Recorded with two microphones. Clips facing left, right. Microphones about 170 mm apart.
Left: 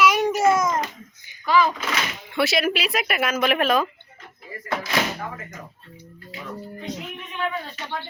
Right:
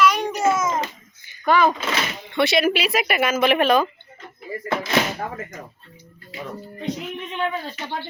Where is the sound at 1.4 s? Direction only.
55° right (ahead or behind).